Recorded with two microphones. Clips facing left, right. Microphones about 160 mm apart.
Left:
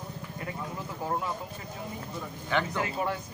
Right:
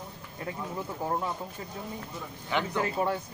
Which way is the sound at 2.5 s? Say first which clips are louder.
Left 1 dB; 15° right (ahead or behind).